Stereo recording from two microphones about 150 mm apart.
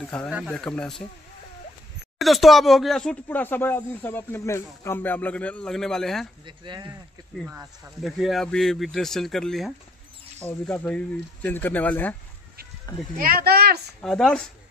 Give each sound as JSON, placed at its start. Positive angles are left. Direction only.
{"t": 0.0, "sound": "speech", "side_deg": 5}
{"t": 2.1, "sound": "speech", "side_deg": 0}
{"t": 6.4, "sound": "speech", "side_deg": -30}
{"t": 8.0, "sound": "speech", "side_deg": 0}
{"t": 13.2, "sound": "a child's voice", "side_deg": -85}
{"t": 14.0, "sound": "speech", "side_deg": 5}